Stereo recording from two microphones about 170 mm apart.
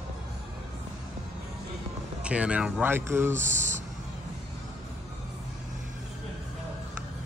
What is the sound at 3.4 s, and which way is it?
Speech, 45° right (ahead or behind).